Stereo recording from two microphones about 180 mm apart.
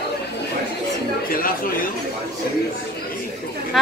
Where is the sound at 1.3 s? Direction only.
50° left (ahead or behind).